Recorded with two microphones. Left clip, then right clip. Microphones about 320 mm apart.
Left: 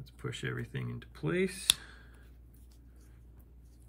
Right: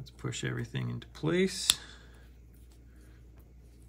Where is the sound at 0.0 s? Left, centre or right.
Centre.